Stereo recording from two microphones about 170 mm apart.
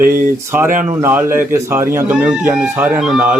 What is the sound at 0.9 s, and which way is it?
A man's voice, 15° right (ahead or behind).